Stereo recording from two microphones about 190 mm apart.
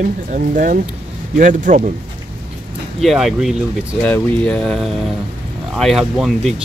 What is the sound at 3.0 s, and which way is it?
Speech, centre (ahead or behind).